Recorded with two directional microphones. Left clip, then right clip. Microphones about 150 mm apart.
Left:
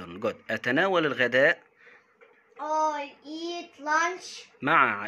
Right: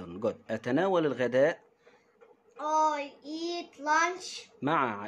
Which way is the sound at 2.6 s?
10° right (ahead or behind).